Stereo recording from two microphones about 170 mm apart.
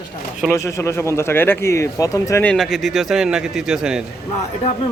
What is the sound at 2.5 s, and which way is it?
Speech, centre (ahead or behind).